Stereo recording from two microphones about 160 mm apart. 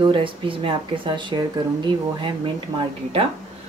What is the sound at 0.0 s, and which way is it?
Speech, 30° right (ahead or behind).